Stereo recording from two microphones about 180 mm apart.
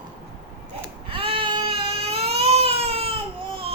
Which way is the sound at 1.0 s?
30° right (ahead or behind).